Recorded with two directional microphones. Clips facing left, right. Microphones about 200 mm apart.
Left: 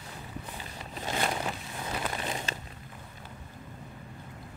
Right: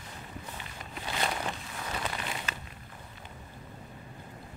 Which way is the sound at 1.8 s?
25° left (ahead or behind).